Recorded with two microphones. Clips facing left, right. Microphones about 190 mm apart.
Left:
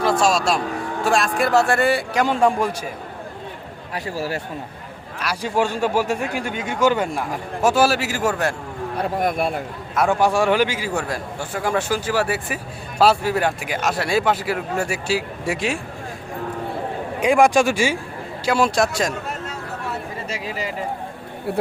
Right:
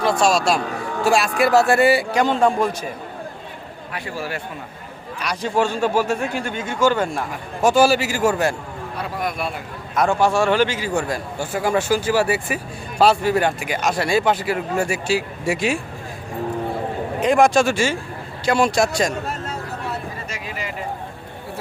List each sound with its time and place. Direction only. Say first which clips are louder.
0.0 s a man's voice: right 1 dB; centre (ahead or behind)
2.2 s speech: left 1 dB; 10° left (ahead or behind)
3.9 s a man's voice: left 3 dB; 40° left (ahead or behind)
5.2 s speech: right 1 dB; 10° left (ahead or behind)
9.0 s speech: left 5 dB; 50° left (ahead or behind)
9.9 s a man's voice: even; 5° left (ahead or behind)
10.2 s a man's voice: right 1 dB; 15° left (ahead or behind)
17.2 s a man's voice: even; 10° left (ahead or behind)